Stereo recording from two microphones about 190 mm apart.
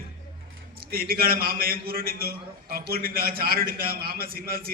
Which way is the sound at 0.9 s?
50° right (ahead or behind).